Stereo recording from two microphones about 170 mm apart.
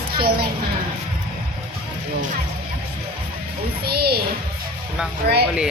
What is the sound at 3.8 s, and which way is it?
Speech, 65° right (ahead or behind).